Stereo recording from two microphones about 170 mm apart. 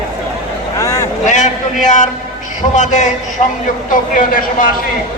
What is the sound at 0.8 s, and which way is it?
Vehicle, 20° left (ahead or behind).